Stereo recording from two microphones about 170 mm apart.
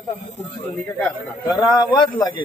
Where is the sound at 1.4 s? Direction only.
20° left (ahead or behind).